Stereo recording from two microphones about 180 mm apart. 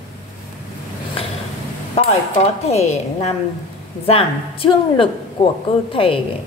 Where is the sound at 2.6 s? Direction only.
35° left (ahead or behind).